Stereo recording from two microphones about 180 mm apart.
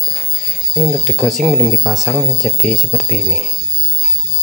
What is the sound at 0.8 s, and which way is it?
Speech, centre (ahead or behind).